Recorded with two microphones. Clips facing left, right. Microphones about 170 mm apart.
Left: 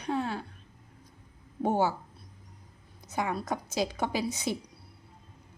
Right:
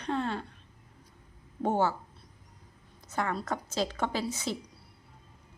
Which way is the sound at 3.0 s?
10° left (ahead or behind).